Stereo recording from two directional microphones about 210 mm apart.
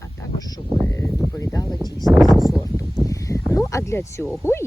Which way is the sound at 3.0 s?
15° left (ahead or behind).